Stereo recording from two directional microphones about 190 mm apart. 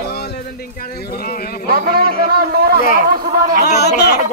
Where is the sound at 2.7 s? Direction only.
50° left (ahead or behind).